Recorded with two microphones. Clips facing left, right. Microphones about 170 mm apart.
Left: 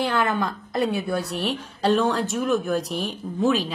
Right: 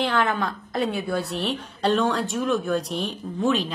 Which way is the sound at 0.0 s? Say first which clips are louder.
Even; centre (ahead or behind).